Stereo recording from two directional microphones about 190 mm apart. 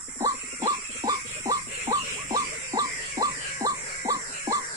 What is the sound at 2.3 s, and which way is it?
Music, 20° right (ahead or behind).